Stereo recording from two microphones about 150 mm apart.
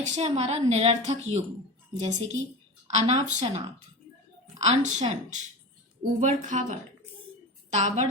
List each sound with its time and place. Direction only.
0.0 s a woman's voice: 45° right (ahead or behind)
7.8 s a woman's voice: 55° right (ahead or behind)